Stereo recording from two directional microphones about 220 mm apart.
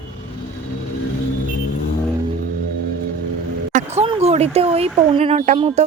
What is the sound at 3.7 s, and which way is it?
A woman's voice, 30° right (ahead or behind).